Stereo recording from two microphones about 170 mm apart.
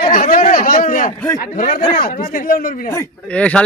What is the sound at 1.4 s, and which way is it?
Speech, 55° left (ahead or behind).